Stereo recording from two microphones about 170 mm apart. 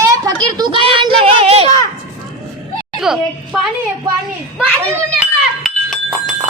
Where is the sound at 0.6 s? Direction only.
30° right (ahead or behind).